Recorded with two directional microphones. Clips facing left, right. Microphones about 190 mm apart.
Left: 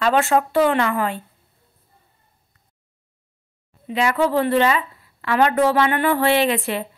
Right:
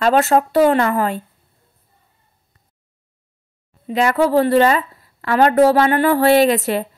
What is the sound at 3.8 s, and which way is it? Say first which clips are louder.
A woman's voice: right 3 dB; 40° right (ahead or behind).